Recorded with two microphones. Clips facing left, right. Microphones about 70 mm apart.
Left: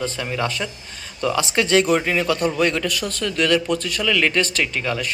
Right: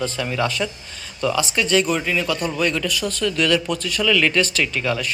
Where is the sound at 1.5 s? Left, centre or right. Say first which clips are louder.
Left 5 dB; left.